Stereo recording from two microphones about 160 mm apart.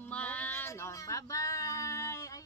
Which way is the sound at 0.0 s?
10° left (ahead or behind).